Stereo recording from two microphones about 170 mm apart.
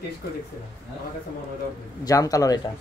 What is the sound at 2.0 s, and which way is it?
Speech, 20° left (ahead or behind).